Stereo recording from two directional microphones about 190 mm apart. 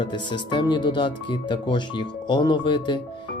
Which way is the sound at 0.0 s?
25° left (ahead or behind).